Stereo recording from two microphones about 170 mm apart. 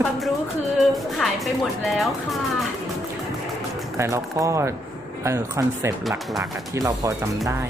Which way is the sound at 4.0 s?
15° right (ahead or behind).